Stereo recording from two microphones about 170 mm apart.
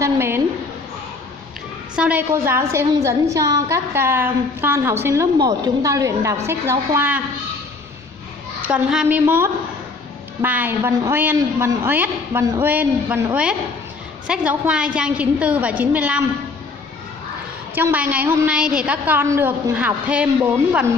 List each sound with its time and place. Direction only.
0.0 s a woman's voice: 15° right (ahead or behind)
2.0 s a woman's voice: 5° right (ahead or behind)
8.6 s a woman's voice: 10° right (ahead or behind)
17.7 s a woman's voice: 10° right (ahead or behind)